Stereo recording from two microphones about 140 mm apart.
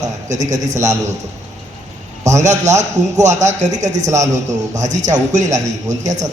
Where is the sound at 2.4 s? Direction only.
55° right (ahead or behind).